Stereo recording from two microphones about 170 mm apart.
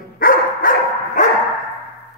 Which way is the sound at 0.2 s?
55° left (ahead or behind).